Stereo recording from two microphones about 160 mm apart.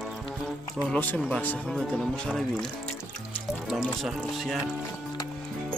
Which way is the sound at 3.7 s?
5° right (ahead or behind).